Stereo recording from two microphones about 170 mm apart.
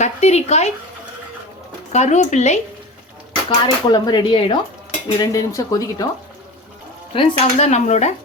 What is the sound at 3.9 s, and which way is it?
Speech, 25° left (ahead or behind).